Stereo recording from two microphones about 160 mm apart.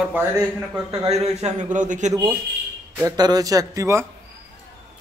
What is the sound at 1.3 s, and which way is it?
Speech, 45° right (ahead or behind).